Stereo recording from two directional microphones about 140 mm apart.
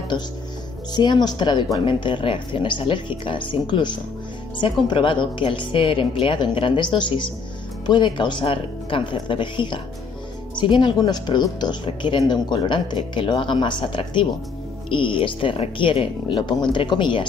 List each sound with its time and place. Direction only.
0.1 s speech: 35° left (ahead or behind)